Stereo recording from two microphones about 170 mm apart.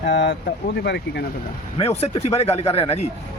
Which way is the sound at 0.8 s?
80° left.